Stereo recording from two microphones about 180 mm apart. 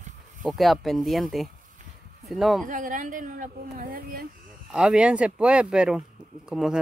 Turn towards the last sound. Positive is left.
turn(degrees=-5)  # may be behind; listen again after turning